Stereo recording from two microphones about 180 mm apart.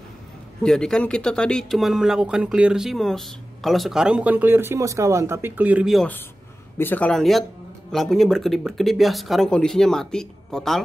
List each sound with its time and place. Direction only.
0.6 s speech: 5° left (ahead or behind)
6.8 s speech: 10° left (ahead or behind)